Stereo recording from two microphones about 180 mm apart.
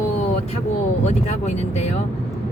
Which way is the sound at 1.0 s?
40° left (ahead or behind).